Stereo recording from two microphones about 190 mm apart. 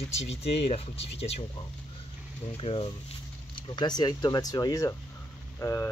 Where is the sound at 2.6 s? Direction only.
30° left (ahead or behind).